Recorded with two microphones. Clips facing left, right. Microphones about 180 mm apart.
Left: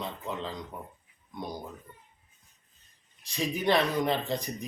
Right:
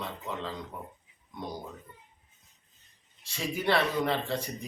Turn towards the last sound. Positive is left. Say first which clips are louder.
# left 1 dB
turn(degrees=15)  # may be behind; listen again after turning